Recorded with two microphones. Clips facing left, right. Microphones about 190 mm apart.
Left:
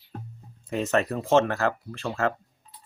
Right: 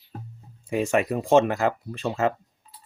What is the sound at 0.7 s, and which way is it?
Speech, 10° right (ahead or behind).